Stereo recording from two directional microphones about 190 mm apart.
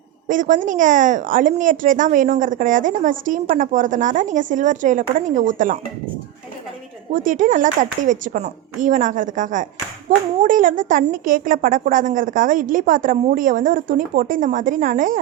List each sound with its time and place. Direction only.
0.3 s a woman's voice: 45° right (ahead or behind)
7.1 s a woman's voice: 45° right (ahead or behind)